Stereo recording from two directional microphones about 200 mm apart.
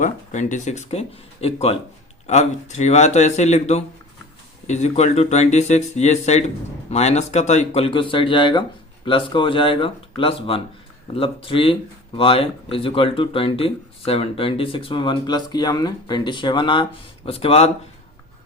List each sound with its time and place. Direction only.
0.0 s speech: 40° left (ahead or behind)